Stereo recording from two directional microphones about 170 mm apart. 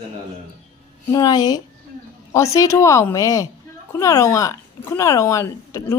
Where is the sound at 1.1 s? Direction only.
25° left (ahead or behind).